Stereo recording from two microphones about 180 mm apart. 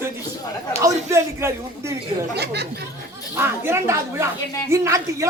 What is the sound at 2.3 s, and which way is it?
Speech, 65° right (ahead or behind).